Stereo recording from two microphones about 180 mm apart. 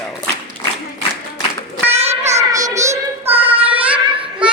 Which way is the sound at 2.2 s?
15° right (ahead or behind).